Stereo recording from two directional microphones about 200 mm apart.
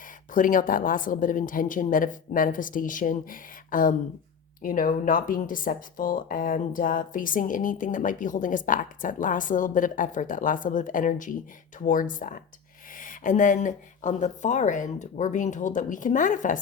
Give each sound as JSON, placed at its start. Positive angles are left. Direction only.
{"t": 0.3, "sound": "a woman's voice", "side_deg": 40}